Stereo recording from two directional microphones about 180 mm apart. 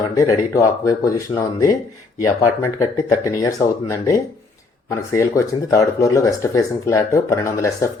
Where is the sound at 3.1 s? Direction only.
15° left (ahead or behind).